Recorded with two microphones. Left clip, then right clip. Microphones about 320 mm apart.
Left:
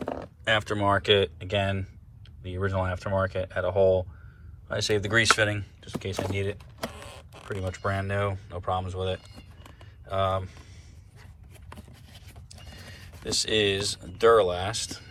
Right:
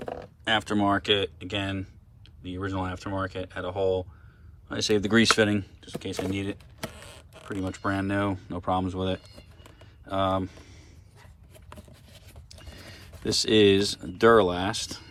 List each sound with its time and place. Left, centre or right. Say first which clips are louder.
0.0 s a sound: left 2 dB; centre
0.4 s speech: even; centre
13.2 s speech: right 4 dB; right